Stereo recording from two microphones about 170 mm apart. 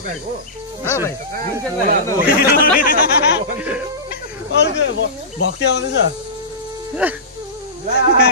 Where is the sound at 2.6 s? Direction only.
60° left (ahead or behind).